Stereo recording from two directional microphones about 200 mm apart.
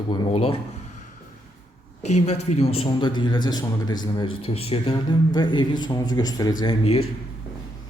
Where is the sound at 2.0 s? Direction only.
35° left (ahead or behind).